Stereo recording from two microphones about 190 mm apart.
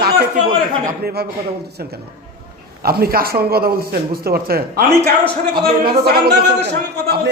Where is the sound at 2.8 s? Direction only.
55° right (ahead or behind).